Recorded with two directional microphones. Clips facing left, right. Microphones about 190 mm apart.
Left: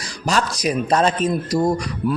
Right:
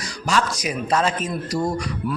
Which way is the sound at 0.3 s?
40° left (ahead or behind).